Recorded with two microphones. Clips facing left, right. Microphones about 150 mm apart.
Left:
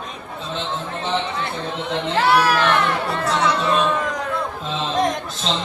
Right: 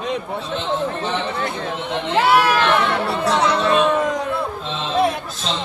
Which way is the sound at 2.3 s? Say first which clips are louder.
Right 1 dB; centre (ahead or behind).